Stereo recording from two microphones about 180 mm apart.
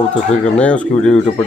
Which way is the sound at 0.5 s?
5° left (ahead or behind).